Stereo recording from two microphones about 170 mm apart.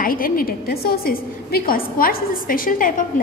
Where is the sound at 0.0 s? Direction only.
55° left (ahead or behind).